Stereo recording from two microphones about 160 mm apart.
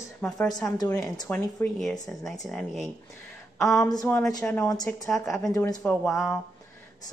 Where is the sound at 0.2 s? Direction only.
5° left (ahead or behind).